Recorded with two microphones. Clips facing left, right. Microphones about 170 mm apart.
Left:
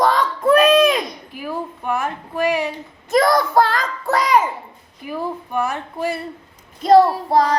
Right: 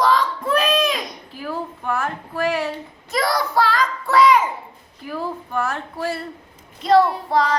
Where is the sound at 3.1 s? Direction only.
50° left (ahead or behind).